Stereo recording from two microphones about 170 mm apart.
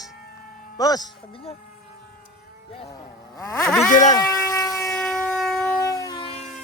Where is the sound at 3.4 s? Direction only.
20° left (ahead or behind).